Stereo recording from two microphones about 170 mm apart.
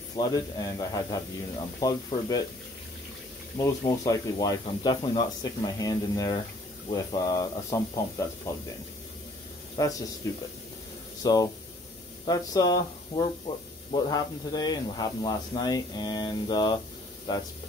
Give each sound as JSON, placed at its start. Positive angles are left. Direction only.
{"t": 0.1, "sound": "speech", "side_deg": 20}
{"t": 3.5, "sound": "speech", "side_deg": 25}
{"t": 9.8, "sound": "speech", "side_deg": 20}
{"t": 11.2, "sound": "speech", "side_deg": 25}